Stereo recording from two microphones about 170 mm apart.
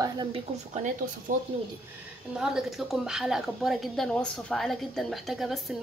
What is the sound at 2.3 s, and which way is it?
Speech, 5° right (ahead or behind).